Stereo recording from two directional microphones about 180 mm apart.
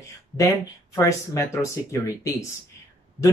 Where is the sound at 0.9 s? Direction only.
15° left (ahead or behind).